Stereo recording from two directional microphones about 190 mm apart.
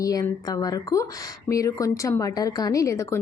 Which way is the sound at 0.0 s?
20° left (ahead or behind).